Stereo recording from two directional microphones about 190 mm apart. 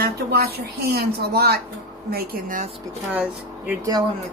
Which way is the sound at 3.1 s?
5° right (ahead or behind).